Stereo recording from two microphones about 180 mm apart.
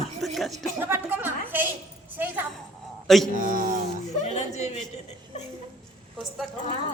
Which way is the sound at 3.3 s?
50° right (ahead or behind).